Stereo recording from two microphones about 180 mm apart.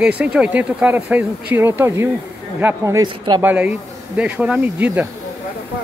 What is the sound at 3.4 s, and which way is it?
Speech, 10° right (ahead or behind).